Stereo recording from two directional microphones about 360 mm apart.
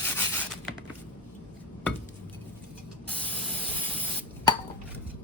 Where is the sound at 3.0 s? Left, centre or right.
Centre.